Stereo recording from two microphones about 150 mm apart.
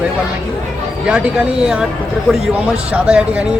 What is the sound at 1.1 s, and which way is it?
Speech, 5° right (ahead or behind).